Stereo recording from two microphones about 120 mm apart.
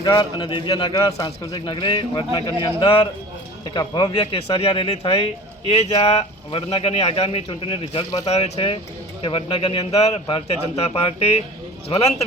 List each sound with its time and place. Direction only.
0.0 s a man's voice: 35° left (ahead or behind)
3.8 s speech: 35° left (ahead or behind)
4.2 s a man's voice: 55° left (ahead or behind)